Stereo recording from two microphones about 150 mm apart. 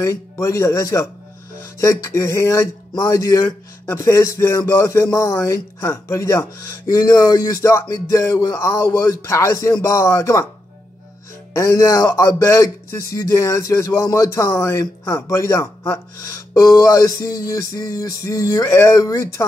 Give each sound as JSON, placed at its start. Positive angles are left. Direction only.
{"t": 0.0, "sound": "speech", "side_deg": 20}
{"t": 11.5, "sound": "speech", "side_deg": 20}